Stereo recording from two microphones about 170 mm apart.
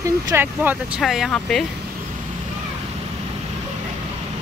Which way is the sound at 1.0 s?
Centre (ahead or behind).